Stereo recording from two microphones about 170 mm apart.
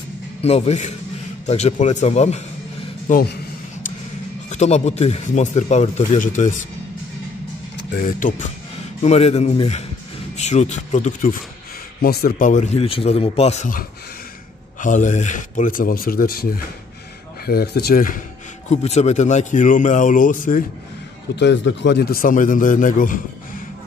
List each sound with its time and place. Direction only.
0.4 s a man's voice: 35° left (ahead or behind)
4.5 s speech: 40° left (ahead or behind)
8.0 s speech: 50° left (ahead or behind)
9.0 s speech: 40° left (ahead or behind)
12.0 s speech: 65° left (ahead or behind)
17.5 s speech: 65° left (ahead or behind)
18.7 s speech: 40° left (ahead or behind)
21.4 s speech: 90° left; by 23.2 s 55° left (ahead or behind)